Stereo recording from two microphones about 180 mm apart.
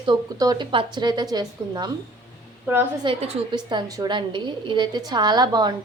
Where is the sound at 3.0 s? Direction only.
30° right (ahead or behind).